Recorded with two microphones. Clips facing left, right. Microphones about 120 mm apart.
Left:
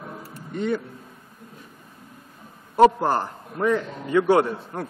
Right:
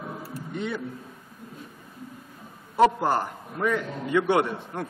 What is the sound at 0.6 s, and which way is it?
Speech, 45° left (ahead or behind).